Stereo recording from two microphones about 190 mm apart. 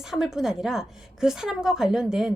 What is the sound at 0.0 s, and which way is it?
A woman's voice, centre (ahead or behind).